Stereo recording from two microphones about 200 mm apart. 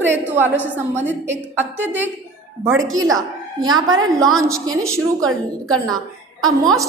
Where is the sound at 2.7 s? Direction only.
75° right (ahead or behind).